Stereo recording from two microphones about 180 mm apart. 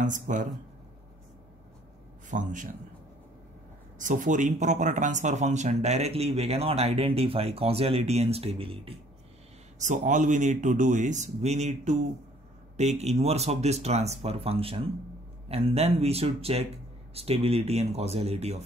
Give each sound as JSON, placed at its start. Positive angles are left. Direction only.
{"t": 0.0, "sound": "speech", "side_deg": -45}
{"t": 2.2, "sound": "speech", "side_deg": -45}
{"t": 4.0, "sound": "speech", "side_deg": -45}
{"t": 9.8, "sound": "speech", "side_deg": -45}